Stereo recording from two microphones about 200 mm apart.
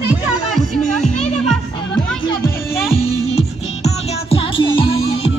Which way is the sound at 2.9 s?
30° left (ahead or behind).